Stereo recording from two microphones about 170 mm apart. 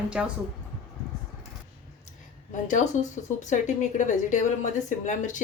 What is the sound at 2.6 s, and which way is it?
Speech, 45° left (ahead or behind).